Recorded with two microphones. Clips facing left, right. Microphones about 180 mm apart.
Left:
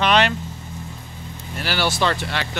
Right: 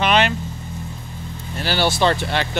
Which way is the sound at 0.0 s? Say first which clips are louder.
Even; 5° right (ahead or behind).